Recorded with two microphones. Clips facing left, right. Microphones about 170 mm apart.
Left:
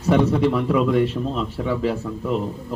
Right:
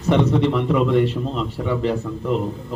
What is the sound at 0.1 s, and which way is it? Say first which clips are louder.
A man's voice: even; 5° left (ahead or behind).